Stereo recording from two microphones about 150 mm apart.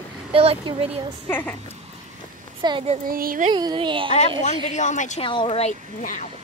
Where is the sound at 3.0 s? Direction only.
75° right (ahead or behind).